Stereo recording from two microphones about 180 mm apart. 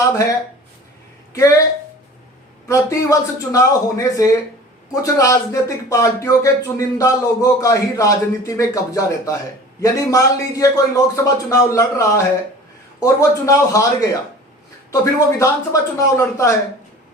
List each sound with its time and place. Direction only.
0.0 s speech: 15° left (ahead or behind)
2.6 s speech: 15° left (ahead or behind)
15.4 s speech: 15° left (ahead or behind)